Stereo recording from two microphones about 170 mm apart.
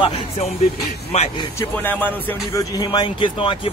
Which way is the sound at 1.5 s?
15° left (ahead or behind).